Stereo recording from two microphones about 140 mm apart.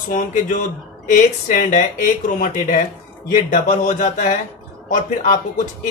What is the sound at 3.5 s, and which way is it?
Speech, 65° left (ahead or behind).